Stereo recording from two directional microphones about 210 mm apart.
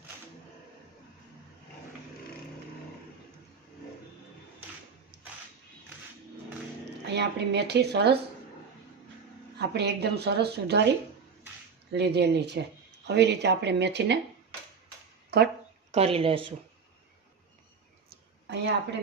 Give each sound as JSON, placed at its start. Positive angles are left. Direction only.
{"t": 5.1, "sound": "a sound", "side_deg": -55}
{"t": 7.0, "sound": "speech", "side_deg": -55}
{"t": 9.6, "sound": "speech", "side_deg": -50}
{"t": 11.9, "sound": "speech", "side_deg": -50}
{"t": 15.3, "sound": "speech", "side_deg": -50}
{"t": 15.9, "sound": "speech", "side_deg": -30}
{"t": 18.1, "sound": "a sound", "side_deg": -55}